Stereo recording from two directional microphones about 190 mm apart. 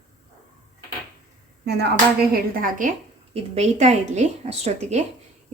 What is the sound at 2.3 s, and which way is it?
Speech, 45° right (ahead or behind).